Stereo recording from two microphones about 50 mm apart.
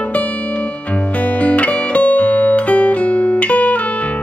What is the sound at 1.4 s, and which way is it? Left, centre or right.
Music, left.